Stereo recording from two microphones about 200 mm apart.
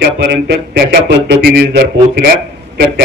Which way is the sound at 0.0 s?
55° right (ahead or behind).